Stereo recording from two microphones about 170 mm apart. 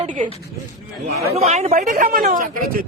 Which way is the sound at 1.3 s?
40° right (ahead or behind).